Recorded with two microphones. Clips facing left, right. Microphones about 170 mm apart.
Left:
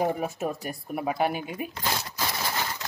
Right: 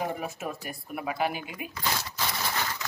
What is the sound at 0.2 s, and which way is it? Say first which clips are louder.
A woman's voice: left 5 dB; 40° left (ahead or behind).